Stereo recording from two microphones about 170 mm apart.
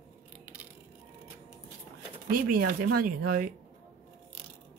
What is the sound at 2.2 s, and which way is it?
Speech, 55° right (ahead or behind).